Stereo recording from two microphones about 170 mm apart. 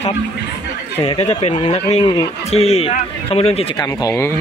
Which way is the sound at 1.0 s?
40° left (ahead or behind).